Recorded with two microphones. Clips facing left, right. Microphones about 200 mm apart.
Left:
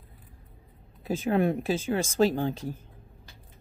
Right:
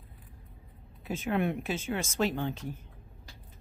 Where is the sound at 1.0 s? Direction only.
35° left (ahead or behind).